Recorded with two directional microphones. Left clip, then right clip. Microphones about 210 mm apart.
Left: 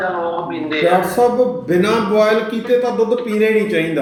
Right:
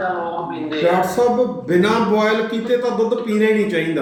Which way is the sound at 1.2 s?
Centre (ahead or behind).